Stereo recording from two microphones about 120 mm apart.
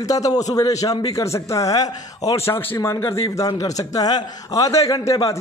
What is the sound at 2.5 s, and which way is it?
Speech, 15° left (ahead or behind).